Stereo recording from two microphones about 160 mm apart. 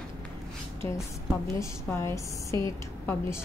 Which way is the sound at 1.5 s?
20° left (ahead or behind).